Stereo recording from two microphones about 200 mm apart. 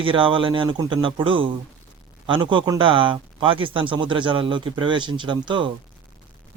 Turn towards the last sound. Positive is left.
turn(degrees=-25)  # may be behind; listen again after turning